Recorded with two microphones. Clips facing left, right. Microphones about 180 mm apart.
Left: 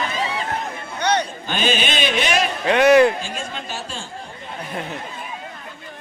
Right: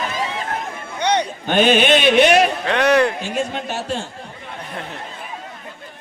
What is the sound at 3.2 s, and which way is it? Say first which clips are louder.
Speech: right 7 dB; 60° right (ahead or behind).